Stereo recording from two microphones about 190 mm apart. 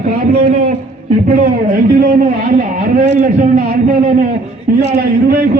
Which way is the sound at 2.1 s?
40° right (ahead or behind).